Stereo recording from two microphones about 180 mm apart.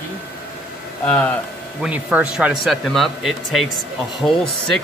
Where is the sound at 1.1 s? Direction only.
10° left (ahead or behind).